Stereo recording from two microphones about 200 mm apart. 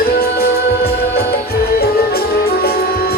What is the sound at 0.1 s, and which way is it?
Music, 50° left (ahead or behind).